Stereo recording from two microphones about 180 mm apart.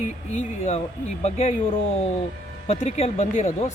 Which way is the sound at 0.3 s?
40° left (ahead or behind).